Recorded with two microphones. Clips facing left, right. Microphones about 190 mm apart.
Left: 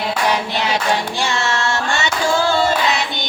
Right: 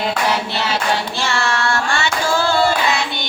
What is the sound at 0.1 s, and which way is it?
Child singing, 15° left (ahead or behind).